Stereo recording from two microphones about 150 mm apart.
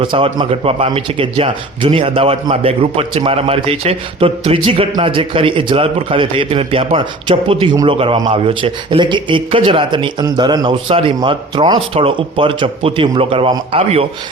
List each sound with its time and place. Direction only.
0.0 s a man's voice: 35° right (ahead or behind)